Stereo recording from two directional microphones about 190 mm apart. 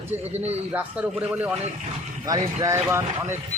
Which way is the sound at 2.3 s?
20° right (ahead or behind).